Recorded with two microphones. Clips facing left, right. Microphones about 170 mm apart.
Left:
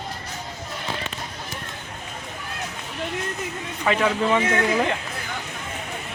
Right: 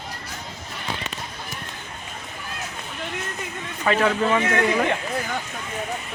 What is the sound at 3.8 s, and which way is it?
Speech, 10° left (ahead or behind).